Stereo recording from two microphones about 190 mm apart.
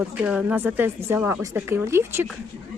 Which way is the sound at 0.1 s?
5° right (ahead or behind).